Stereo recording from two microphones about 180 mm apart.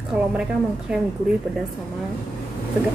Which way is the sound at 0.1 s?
5° right (ahead or behind).